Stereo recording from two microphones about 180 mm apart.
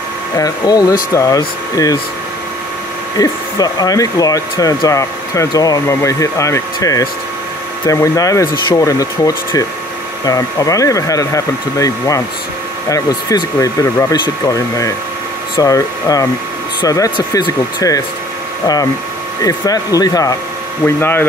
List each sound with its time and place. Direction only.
0.4 s speech: 20° left (ahead or behind)
3.2 s speech: 20° left (ahead or behind)
19.4 s speech: 20° left (ahead or behind)